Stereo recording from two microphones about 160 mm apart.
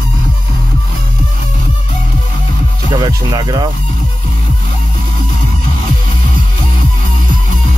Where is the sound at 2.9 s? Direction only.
25° right (ahead or behind).